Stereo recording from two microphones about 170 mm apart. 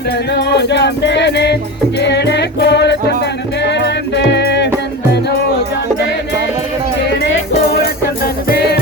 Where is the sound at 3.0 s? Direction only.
75° left (ahead or behind).